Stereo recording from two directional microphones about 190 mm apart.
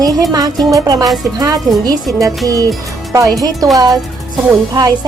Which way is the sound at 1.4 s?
20° right (ahead or behind).